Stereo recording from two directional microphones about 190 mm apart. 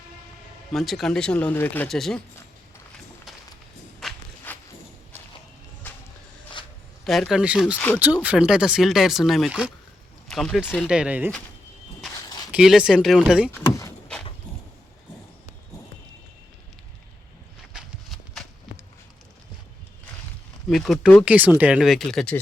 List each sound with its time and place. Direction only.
0.7 s speech: centre (ahead or behind)
4.0 s walk: centre (ahead or behind)
5.8 s a sound: 10° left (ahead or behind)
7.0 s speech: centre (ahead or behind)
12.1 s a sound: 20° left (ahead or behind)
12.5 s speech: 5° right (ahead or behind)
13.5 s vehicle: 15° left (ahead or behind)
17.7 s horse: centre (ahead or behind)
20.7 s speech: centre (ahead or behind)